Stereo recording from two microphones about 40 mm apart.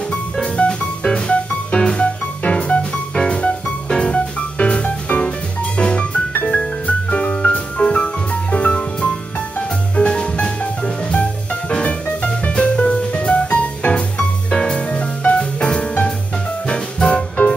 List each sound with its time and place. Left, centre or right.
0.6 s music: left
10.6 s music: left